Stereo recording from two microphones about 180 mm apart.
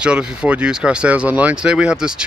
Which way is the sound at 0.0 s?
5° right (ahead or behind).